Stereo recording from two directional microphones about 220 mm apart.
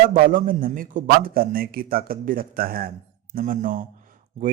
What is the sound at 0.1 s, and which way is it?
A man's voice, 35° right (ahead or behind).